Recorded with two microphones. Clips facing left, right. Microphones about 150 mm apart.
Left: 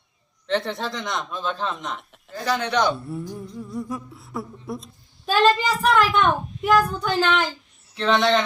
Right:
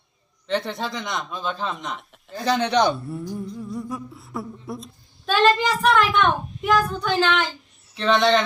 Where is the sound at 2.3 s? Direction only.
20° right (ahead or behind).